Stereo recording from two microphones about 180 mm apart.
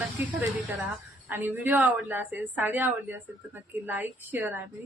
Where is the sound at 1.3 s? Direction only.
10° right (ahead or behind).